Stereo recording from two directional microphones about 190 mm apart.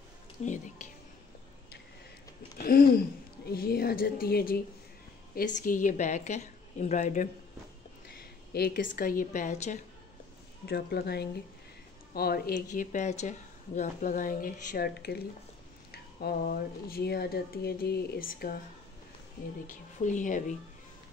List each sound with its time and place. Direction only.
0.4 s a woman's voice: 35° left (ahead or behind)
2.5 s a woman's voice: 50° left (ahead or behind)
8.1 s a sound: 50° left (ahead or behind)
8.9 s a woman's voice: 45° left (ahead or behind)
10.6 s speech: 60° left (ahead or behind)
19.7 s a woman's voice: 40° left (ahead or behind)